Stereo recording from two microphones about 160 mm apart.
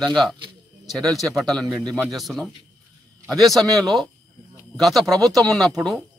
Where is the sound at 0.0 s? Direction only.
Centre (ahead or behind).